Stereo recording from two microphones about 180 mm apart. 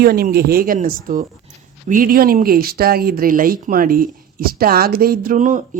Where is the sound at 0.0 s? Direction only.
55° right (ahead or behind).